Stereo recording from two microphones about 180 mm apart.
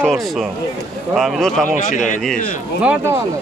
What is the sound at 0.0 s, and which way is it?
A man's voice, centre (ahead or behind).